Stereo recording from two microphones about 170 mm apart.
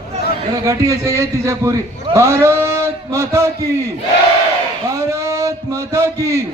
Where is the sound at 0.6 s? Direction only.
20° right (ahead or behind).